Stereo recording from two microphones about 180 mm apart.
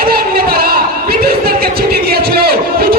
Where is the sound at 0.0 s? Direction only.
55° right (ahead or behind).